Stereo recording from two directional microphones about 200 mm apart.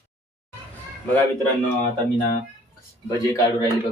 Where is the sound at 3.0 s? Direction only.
15° left (ahead or behind).